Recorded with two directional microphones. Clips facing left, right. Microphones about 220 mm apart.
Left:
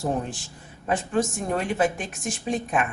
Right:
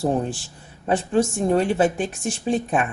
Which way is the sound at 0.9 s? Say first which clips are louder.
Right 4 dB; 30° right (ahead or behind).